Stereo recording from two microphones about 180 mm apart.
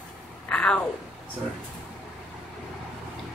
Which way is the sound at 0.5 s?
5° left (ahead or behind).